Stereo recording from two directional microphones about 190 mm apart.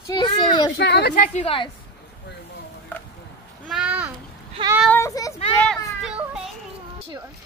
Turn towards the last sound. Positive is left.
turn(degrees=-5)  # may be behind; listen again after turning